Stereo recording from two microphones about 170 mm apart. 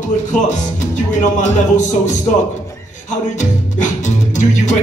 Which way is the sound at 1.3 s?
45° left (ahead or behind).